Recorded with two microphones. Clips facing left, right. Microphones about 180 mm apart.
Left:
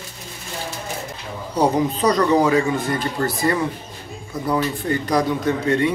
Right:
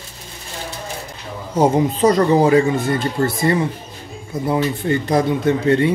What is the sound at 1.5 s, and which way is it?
Speech, 25° right (ahead or behind).